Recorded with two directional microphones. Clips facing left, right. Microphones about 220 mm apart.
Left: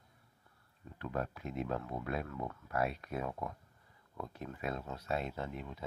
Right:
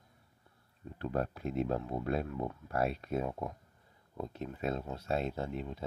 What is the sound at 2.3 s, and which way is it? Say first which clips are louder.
Speech: right 4 dB; 20° right (ahead or behind).